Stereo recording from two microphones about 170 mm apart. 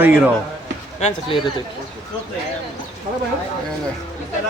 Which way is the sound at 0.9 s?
40° left (ahead or behind).